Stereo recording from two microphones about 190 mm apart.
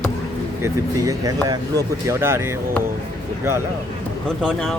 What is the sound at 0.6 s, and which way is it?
Speech, 15° right (ahead or behind).